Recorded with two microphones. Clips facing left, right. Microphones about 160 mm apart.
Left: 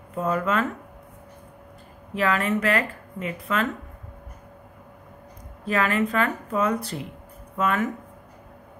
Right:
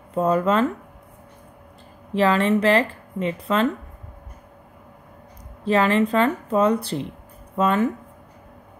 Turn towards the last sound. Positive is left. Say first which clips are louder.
# right 4 dB
turn(degrees=-30)  # may be behind; listen again after turning